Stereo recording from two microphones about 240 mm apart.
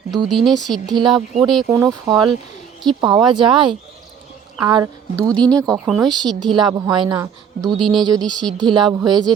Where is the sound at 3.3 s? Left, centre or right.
Centre.